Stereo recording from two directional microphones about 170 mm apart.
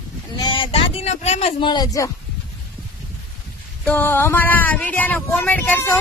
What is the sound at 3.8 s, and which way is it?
Speech, 10° left (ahead or behind).